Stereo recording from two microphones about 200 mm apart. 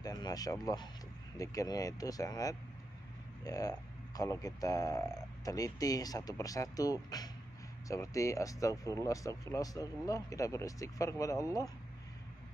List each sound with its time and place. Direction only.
0.0 s speech: 20° left (ahead or behind)